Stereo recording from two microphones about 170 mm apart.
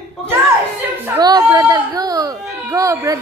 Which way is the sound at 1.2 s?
20° right (ahead or behind).